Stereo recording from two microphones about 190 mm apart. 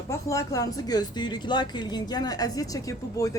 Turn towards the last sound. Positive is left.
turn(degrees=15)  # may be behind; listen again after turning